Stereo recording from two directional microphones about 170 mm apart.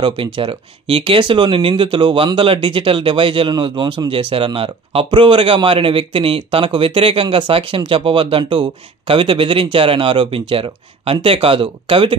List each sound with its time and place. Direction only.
0.0 s speech: 30° right (ahead or behind)